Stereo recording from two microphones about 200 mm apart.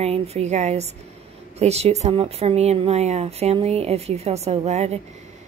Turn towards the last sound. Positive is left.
turn(degrees=-35)  # may be behind; listen again after turning